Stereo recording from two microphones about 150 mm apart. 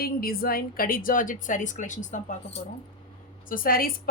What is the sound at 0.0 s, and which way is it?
A woman's voice, 85° left.